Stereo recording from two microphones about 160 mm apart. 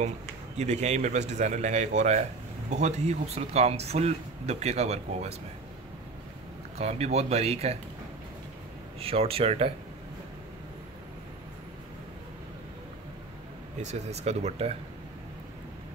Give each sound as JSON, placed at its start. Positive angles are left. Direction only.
{"t": 0.6, "sound": "speech", "side_deg": -45}
{"t": 6.8, "sound": "speech", "side_deg": -40}
{"t": 9.0, "sound": "speech", "side_deg": -40}
{"t": 13.7, "sound": "speech", "side_deg": -45}